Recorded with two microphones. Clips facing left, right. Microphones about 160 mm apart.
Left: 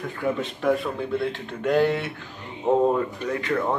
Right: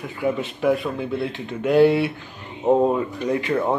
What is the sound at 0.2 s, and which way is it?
Speech, 10° right (ahead or behind).